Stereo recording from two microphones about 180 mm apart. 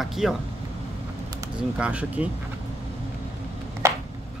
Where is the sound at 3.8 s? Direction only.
15° right (ahead or behind).